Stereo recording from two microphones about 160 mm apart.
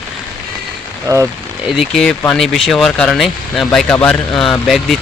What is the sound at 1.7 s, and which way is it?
Speech, 5° left (ahead or behind).